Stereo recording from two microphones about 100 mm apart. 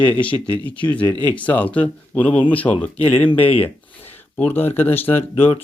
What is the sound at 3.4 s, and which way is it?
Speech, 70° left (ahead or behind).